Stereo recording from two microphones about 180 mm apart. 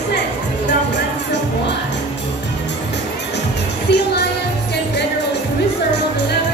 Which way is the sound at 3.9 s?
70° left (ahead or behind).